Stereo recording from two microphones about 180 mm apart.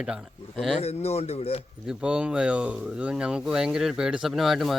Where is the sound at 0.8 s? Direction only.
35° left (ahead or behind).